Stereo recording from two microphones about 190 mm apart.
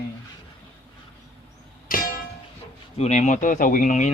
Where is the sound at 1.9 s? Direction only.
50° left (ahead or behind).